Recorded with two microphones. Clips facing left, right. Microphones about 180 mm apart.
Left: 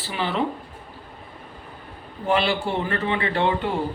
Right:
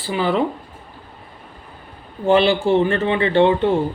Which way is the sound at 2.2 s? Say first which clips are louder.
Right 7 dB; 25° right (ahead or behind).